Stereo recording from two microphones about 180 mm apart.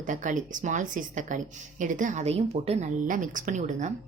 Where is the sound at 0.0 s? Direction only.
45° right (ahead or behind).